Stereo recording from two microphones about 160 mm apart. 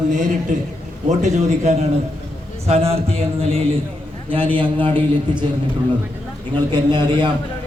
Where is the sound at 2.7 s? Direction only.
40° right (ahead or behind).